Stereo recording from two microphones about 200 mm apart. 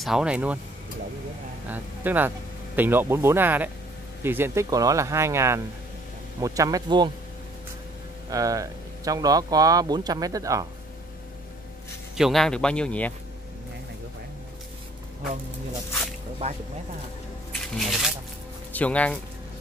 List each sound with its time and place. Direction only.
0.0 s speech: 5° right (ahead or behind)
1.7 s speech: 10° right (ahead or behind)
8.3 s speech: 15° right (ahead or behind)
12.2 s speech: centre (ahead or behind)
16.4 s speech: 30° right (ahead or behind)
17.7 s speech: centre (ahead or behind)